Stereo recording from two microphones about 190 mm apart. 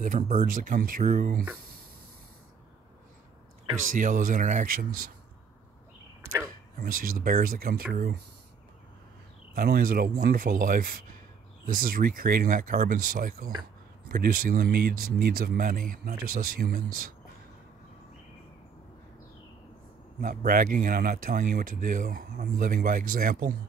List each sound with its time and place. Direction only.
0.0 s speech: 40° right (ahead or behind)
3.9 s speech: 45° right (ahead or behind)
6.8 s speech: 50° right (ahead or behind)
9.6 s speech: 50° right (ahead or behind)
20.2 s speech: 50° right (ahead or behind)